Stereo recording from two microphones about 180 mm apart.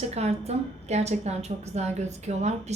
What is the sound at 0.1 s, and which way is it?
A woman's voice, 35° right (ahead or behind).